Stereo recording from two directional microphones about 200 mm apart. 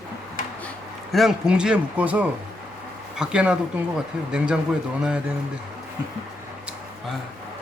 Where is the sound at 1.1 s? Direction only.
Centre (ahead or behind).